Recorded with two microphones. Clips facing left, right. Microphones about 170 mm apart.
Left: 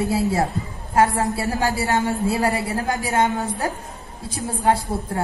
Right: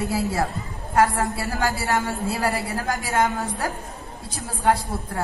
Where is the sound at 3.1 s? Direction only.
20° left (ahead or behind).